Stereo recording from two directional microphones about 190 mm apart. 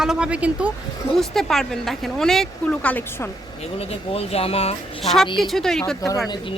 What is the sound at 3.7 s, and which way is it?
Speech, 30° left (ahead or behind).